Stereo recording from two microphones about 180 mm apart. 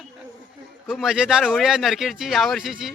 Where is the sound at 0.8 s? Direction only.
Centre (ahead or behind).